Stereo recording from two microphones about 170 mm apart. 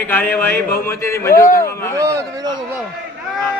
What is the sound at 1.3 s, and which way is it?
Speech, 55° left (ahead or behind).